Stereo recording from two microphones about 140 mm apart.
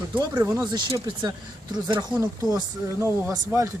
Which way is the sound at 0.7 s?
30° right (ahead or behind).